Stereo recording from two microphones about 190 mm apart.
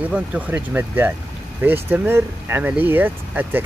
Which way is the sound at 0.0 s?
10° right (ahead or behind).